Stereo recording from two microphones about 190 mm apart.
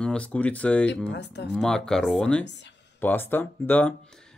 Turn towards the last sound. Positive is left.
turn(degrees=10)  # may be behind; listen again after turning